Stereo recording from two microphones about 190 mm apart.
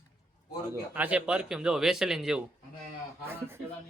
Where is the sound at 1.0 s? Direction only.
5° right (ahead or behind).